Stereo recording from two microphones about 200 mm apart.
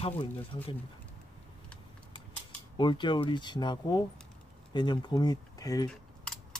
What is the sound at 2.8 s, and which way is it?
Speech, 25° left (ahead or behind).